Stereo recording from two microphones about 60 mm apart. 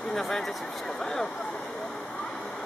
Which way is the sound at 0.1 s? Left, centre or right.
Centre.